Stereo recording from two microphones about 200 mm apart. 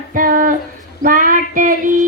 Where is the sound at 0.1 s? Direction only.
45° right (ahead or behind).